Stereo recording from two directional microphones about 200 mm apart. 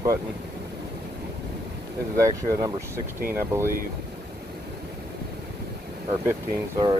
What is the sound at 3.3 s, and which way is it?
Speech, 10° right (ahead or behind).